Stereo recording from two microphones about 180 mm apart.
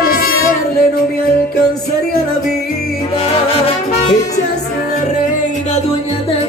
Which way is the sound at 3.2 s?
35° left (ahead or behind).